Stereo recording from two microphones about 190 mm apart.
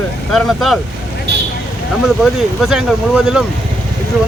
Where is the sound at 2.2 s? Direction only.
Centre (ahead or behind).